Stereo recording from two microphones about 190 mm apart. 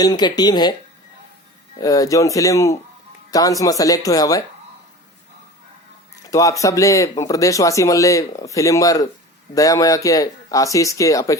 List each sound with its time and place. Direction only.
0.0 s speech: 20° left (ahead or behind)
1.8 s speech: 20° left (ahead or behind)
6.2 s speech: 15° left (ahead or behind)